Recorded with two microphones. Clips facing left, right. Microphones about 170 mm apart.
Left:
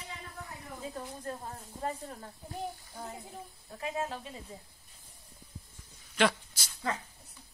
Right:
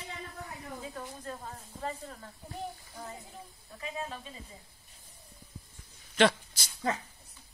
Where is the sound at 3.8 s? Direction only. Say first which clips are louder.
Left 4 dB; 70° left (ahead or behind).